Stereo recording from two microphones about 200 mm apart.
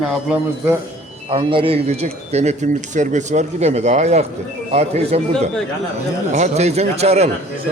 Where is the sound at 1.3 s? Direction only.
25° right (ahead or behind).